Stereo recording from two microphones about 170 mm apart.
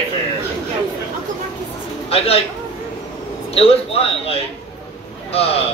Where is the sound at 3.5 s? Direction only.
35° left (ahead or behind).